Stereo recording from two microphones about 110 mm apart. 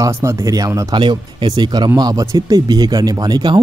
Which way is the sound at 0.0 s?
30° right (ahead or behind).